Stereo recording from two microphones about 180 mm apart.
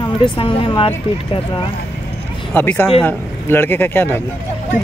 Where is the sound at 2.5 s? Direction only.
10° left (ahead or behind).